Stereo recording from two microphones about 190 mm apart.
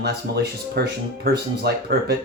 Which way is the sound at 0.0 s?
60° right (ahead or behind).